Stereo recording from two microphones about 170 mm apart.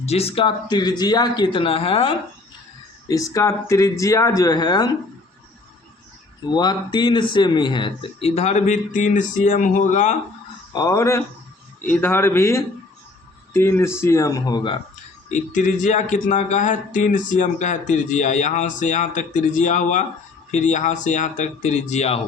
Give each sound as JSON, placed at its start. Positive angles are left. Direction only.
{"t": 0.0, "sound": "a man's voice", "side_deg": 35}
{"t": 3.1, "sound": "speech", "side_deg": 20}
{"t": 6.5, "sound": "speech", "side_deg": 25}
{"t": 8.4, "sound": "speech", "side_deg": 45}
{"t": 10.7, "sound": "a man's voice", "side_deg": 20}
{"t": 15.3, "sound": "speech", "side_deg": 45}